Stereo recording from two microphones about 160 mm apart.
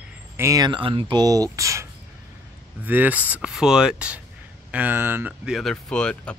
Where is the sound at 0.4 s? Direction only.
20° right (ahead or behind).